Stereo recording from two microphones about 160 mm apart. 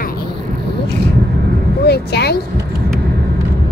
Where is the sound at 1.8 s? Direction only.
85° left.